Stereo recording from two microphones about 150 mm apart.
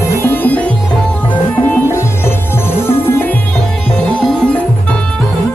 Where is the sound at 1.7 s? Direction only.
15° left (ahead or behind).